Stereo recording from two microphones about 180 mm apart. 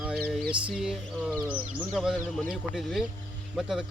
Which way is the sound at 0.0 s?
5° right (ahead or behind).